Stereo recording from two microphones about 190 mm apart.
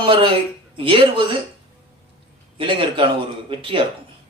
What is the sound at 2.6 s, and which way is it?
A man's voice, 25° right (ahead or behind).